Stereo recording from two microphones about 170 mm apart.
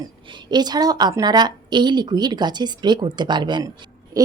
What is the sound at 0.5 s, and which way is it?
Speech, 25° right (ahead or behind).